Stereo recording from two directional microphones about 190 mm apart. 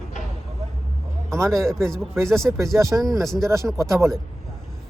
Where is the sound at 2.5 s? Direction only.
10° right (ahead or behind).